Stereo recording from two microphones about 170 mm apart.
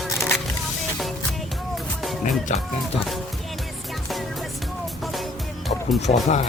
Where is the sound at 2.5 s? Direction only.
45° left (ahead or behind).